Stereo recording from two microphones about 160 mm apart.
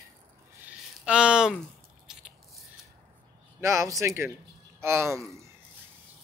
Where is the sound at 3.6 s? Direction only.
20° right (ahead or behind).